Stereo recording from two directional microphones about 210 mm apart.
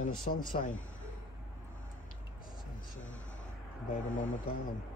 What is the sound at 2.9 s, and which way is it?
Vehicle, 65° left (ahead or behind).